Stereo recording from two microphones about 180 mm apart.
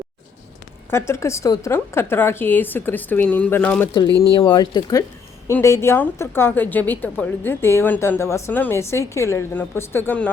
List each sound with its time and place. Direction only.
0.9 s a woman's voice: 15° left (ahead or behind)
4.2 s a woman's voice: 25° left (ahead or behind); by 10.3 s 10° left (ahead or behind)